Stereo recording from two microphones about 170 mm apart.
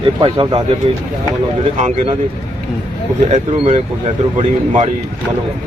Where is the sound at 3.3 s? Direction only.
40° right (ahead or behind).